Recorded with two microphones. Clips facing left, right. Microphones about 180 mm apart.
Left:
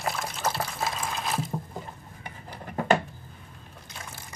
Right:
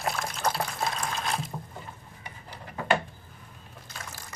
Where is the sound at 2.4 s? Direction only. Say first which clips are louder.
Left 5 dB; 50° left (ahead or behind).